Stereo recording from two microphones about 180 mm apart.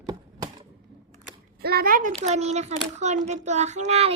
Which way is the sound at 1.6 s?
55° right (ahead or behind).